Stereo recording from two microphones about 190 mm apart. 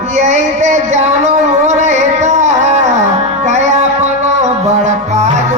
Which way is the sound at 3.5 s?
35° right (ahead or behind).